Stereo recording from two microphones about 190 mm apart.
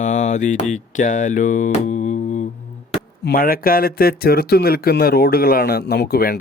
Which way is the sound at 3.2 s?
50° left (ahead or behind).